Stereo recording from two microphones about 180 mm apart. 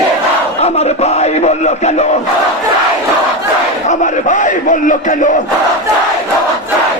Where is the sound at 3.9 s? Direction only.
45° left (ahead or behind).